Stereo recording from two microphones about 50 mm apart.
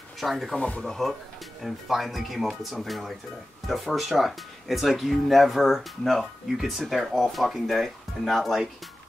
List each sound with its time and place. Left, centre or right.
0.2 s speech: centre
0.6 s speech: left
0.8 s speech: centre